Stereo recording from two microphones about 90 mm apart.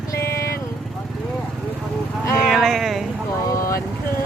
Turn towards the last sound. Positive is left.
turn(degrees=35)  # may be behind; listen again after turning